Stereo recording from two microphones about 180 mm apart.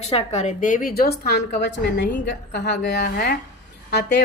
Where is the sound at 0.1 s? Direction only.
35° left (ahead or behind).